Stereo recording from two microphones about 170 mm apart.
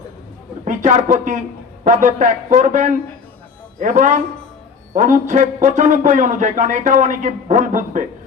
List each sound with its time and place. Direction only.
0.6 s a man's voice: 45° right (ahead or behind)